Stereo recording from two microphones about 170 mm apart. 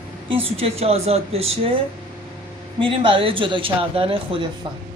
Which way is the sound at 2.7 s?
30° right (ahead or behind).